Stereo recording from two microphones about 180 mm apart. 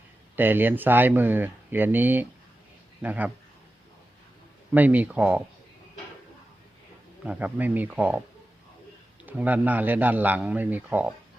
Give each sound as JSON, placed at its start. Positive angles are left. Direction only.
{"t": 0.3, "sound": "a man's voice", "side_deg": -10}
{"t": 4.7, "sound": "a man's voice", "side_deg": -10}
{"t": 7.3, "sound": "a man's voice", "side_deg": -10}
{"t": 9.2, "sound": "a man's voice", "side_deg": -10}